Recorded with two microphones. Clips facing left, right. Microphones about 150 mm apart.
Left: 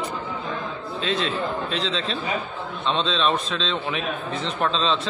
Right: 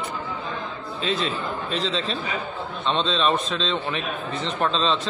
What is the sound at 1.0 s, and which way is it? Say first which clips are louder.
A man's voice: left 1 dB; centre (ahead or behind).